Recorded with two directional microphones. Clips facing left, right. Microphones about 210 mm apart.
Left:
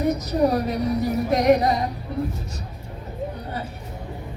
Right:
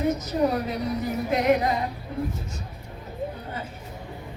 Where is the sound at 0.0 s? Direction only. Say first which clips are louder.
Left 3 dB; 40° left (ahead or behind).